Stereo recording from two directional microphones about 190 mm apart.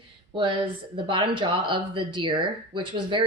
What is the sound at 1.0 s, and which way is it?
A woman's voice, 25° right (ahead or behind).